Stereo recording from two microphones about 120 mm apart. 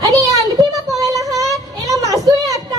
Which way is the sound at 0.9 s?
30° right (ahead or behind).